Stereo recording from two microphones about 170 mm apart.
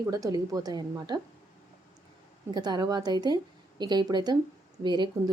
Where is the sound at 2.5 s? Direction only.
25° right (ahead or behind).